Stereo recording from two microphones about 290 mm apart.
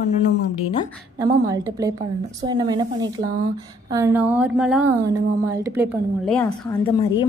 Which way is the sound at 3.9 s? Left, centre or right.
Centre.